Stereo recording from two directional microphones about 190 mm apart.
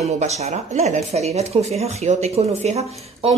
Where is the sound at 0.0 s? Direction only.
35° right (ahead or behind).